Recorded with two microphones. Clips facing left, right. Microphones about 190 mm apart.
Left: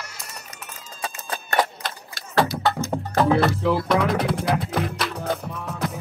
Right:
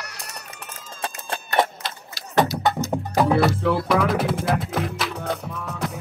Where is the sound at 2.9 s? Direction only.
10° right (ahead or behind).